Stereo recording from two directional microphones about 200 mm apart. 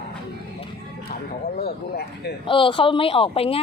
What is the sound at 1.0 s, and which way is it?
Speech, 50° left (ahead or behind).